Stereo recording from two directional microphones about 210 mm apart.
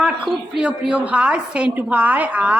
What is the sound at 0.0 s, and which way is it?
A woman's voice, 5° right (ahead or behind).